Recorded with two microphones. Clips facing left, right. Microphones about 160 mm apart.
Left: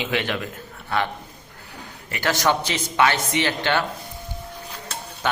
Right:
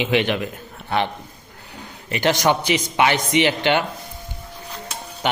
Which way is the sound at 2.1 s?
20° right (ahead or behind).